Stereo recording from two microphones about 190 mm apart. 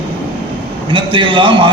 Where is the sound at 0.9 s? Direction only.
25° right (ahead or behind).